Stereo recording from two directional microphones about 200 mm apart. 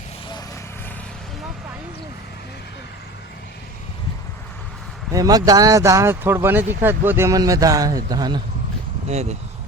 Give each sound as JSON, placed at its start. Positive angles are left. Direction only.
{"t": 5.1, "sound": "speech", "side_deg": -20}
{"t": 9.0, "sound": "speech", "side_deg": -35}